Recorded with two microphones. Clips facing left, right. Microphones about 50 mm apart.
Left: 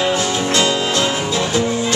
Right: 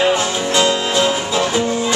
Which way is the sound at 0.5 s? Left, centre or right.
Centre.